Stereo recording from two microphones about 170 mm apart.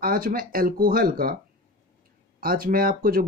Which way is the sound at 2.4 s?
60° right (ahead or behind).